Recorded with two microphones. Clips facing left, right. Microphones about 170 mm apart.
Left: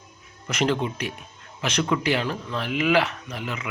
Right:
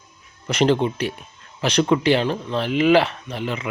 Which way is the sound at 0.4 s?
30° right (ahead or behind).